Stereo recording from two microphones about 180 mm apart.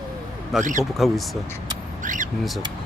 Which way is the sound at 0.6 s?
45° right (ahead or behind).